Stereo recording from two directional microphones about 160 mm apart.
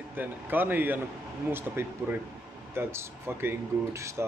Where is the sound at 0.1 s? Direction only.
10° right (ahead or behind).